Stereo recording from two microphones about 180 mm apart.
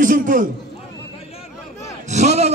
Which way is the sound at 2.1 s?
40° right (ahead or behind).